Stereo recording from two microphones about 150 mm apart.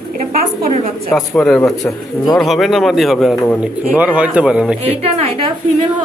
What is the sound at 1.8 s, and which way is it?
Speech, 25° left (ahead or behind).